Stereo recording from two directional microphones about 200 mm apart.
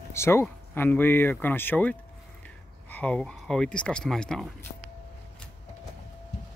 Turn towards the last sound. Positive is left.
turn(degrees=5)  # may be behind; listen again after turning